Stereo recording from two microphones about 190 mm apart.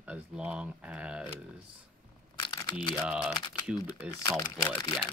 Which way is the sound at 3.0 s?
5° right (ahead or behind).